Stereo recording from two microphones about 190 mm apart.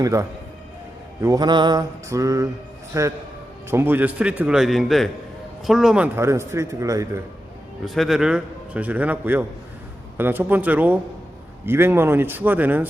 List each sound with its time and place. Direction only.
0.0 s a man's voice: 15° right (ahead or behind)
6.1 s a man's voice: 15° right (ahead or behind)
7.9 s a man's voice: centre (ahead or behind)